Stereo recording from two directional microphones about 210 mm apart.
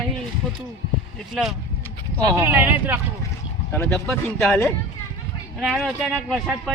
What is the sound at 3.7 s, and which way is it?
A man's voice, 10° left (ahead or behind).